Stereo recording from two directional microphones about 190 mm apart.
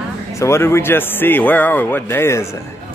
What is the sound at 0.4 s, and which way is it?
Speech, 15° left (ahead or behind).